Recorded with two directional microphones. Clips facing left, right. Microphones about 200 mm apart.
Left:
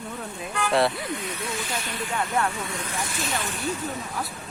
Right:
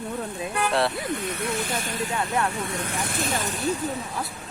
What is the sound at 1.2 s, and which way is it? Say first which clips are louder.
Speech: right 4 dB; 55° right (ahead or behind).